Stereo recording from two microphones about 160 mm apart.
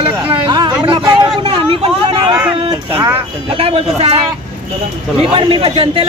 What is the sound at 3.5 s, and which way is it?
Speech, 35° right (ahead or behind).